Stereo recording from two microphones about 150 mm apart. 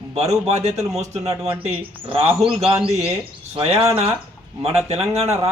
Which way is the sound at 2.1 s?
40° right (ahead or behind).